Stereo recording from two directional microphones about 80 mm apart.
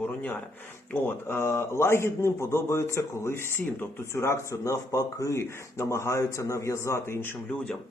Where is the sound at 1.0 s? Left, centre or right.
Left.